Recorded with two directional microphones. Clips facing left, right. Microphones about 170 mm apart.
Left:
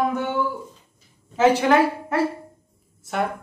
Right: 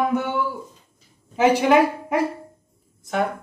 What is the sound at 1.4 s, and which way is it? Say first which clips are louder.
Speech: right 1 dB; 15° right (ahead or behind).